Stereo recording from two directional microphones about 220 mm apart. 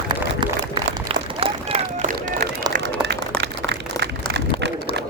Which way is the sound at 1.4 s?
30° right (ahead or behind).